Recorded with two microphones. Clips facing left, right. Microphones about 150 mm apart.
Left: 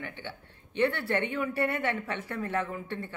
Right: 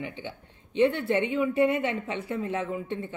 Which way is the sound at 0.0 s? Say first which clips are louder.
Right 4 dB; 15° right (ahead or behind).